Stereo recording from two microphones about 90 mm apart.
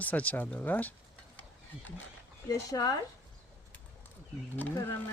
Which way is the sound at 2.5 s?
40° left (ahead or behind).